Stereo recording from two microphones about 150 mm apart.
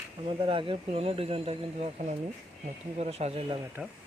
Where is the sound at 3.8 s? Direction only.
10° right (ahead or behind).